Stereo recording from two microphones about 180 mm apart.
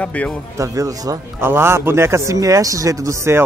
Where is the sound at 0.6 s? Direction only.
20° right (ahead or behind).